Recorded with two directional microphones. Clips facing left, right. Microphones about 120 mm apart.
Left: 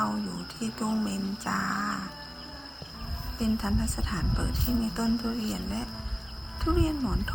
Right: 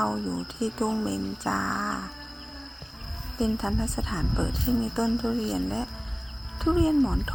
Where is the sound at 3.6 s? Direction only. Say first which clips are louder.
Right 2 dB; 15° right (ahead or behind).